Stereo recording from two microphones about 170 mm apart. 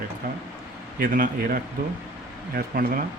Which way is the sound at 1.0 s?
55° right (ahead or behind).